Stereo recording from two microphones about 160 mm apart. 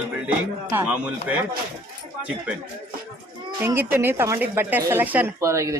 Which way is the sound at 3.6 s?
15° right (ahead or behind).